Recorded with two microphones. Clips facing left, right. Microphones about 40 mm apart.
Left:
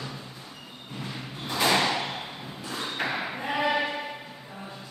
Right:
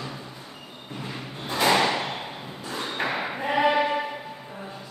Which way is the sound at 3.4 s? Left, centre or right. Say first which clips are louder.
Right 5 dB; right.